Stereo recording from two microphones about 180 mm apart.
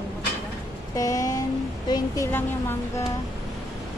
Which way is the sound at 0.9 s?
20° left (ahead or behind).